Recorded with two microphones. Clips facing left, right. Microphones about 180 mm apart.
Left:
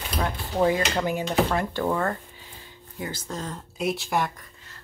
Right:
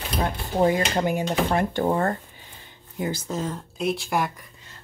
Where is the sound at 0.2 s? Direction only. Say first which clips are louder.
Right 2 dB; 30° right (ahead or behind).